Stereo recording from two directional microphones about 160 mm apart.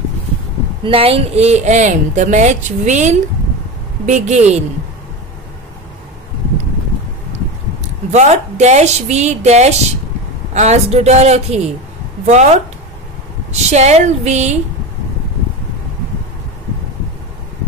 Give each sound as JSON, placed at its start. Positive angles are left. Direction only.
{"t": 0.8, "sound": "a woman's voice", "side_deg": -35}
{"t": 8.1, "sound": "a woman's voice", "side_deg": -45}
{"t": 13.5, "sound": "a woman's voice", "side_deg": -45}